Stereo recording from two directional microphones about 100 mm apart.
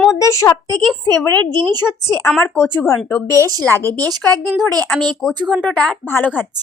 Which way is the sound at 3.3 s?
35° right (ahead or behind).